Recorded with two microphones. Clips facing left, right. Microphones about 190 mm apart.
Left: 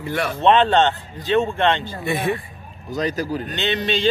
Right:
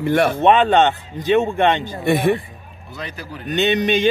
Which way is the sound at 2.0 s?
60° right (ahead or behind).